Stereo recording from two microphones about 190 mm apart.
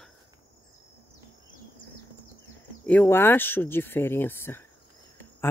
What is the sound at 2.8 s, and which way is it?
Speech, 10° left (ahead or behind).